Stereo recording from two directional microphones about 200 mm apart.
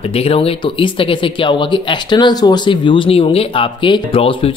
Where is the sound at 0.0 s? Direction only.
30° left (ahead or behind).